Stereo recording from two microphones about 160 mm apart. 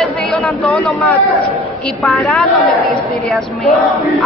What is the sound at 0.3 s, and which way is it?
Speech, centre (ahead or behind).